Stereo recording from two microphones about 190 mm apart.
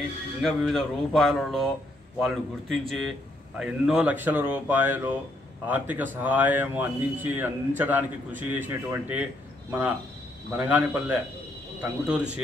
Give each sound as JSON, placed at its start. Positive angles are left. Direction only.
{"t": 0.4, "sound": "speech", "side_deg": 0}